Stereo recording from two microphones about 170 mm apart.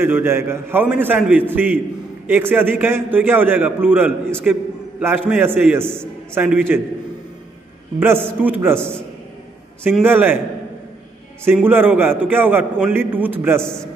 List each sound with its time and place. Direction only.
0.0 s a man's voice: 15° right (ahead or behind)
8.0 s a man's voice: 15° right (ahead or behind)
9.8 s a man's voice: 10° right (ahead or behind)
11.4 s a man's voice: 10° right (ahead or behind)